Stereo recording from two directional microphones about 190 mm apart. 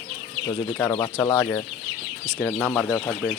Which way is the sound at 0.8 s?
15° left (ahead or behind).